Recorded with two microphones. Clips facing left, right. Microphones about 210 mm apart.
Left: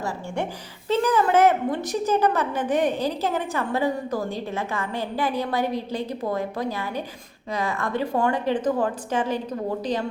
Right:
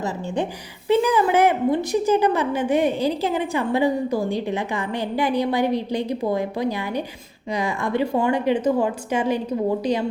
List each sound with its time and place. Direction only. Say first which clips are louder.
0.9 s a woman's voice: right 3 dB; 10° right (ahead or behind)